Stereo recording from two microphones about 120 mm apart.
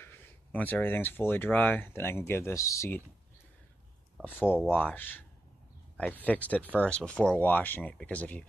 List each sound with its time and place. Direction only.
0.0 s speech: 15° left (ahead or behind)
4.2 s speech: 15° left (ahead or behind)